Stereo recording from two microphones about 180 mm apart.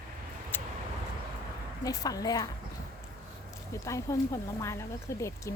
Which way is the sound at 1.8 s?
20° left (ahead or behind).